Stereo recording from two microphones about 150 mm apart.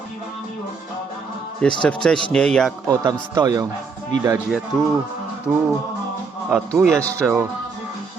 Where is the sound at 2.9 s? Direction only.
25° right (ahead or behind).